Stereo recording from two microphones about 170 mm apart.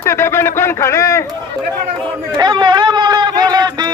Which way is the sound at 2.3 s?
25° right (ahead or behind).